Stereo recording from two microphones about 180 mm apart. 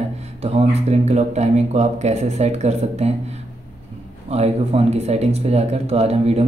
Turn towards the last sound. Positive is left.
turn(degrees=-35)  # may be behind; listen again after turning